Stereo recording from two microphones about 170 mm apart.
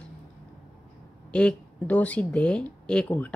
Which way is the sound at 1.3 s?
5° left (ahead or behind).